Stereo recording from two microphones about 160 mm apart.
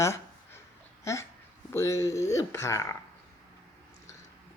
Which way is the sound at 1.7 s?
20° left (ahead or behind).